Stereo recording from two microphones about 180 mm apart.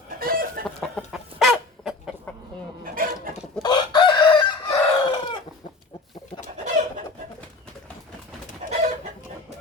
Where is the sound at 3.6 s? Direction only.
25° left (ahead or behind).